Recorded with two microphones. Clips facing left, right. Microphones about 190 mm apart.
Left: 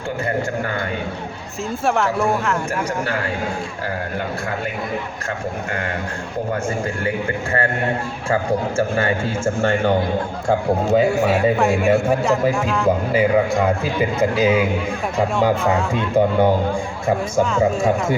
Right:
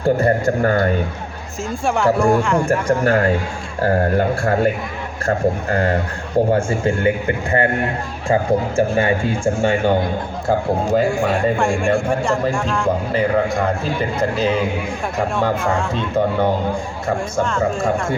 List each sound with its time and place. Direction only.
0.0 s speech: 40° right (ahead or behind)
1.9 s a man's voice: centre (ahead or behind)
3.8 s a man's voice: 45° right (ahead or behind); by 7.1 s 25° right (ahead or behind)
8.3 s a man's voice: 15° right (ahead or behind)
10.9 s a man's voice: 5° left (ahead or behind)